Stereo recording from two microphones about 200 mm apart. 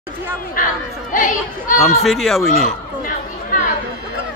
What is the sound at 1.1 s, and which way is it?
Speech, 40° left (ahead or behind).